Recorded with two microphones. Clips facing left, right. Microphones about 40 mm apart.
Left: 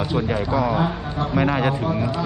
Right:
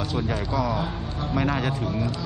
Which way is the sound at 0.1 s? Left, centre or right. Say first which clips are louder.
Left 6 dB; centre.